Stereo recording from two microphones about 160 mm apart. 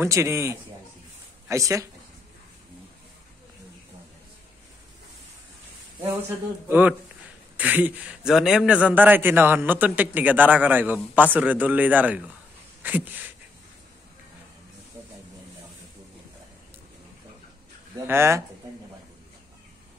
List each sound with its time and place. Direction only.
0.0 s speech: 15° right (ahead or behind)
6.7 s speech: 10° right (ahead or behind)
17.9 s speech: 15° right (ahead or behind)